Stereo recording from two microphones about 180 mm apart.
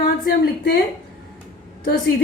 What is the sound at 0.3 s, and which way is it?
Speech, 55° left (ahead or behind).